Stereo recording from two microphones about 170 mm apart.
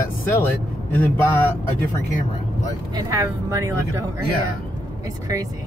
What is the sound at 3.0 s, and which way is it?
Speech, 15° right (ahead or behind).